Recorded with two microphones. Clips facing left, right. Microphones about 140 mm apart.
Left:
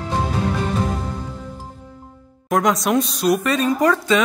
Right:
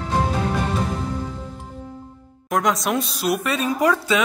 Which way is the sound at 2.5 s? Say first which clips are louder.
Left 3 dB; centre (ahead or behind).